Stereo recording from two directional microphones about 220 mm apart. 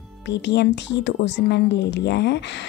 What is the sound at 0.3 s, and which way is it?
A woman's voice, 50° left (ahead or behind).